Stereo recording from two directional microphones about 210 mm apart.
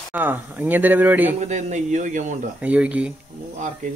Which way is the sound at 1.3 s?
35° right (ahead or behind).